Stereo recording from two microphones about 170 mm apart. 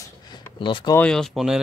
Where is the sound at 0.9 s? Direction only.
5° left (ahead or behind).